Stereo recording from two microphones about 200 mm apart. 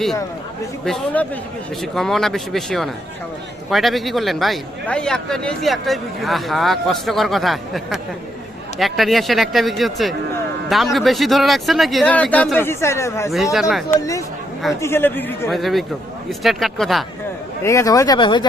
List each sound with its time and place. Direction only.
0.9 s a man's voice: 5° left (ahead or behind)
13.3 s a man's voice: centre (ahead or behind)
14.8 s speech: 10° left (ahead or behind)
15.4 s a man's voice: centre (ahead or behind)
17.6 s speech: 15° left (ahead or behind)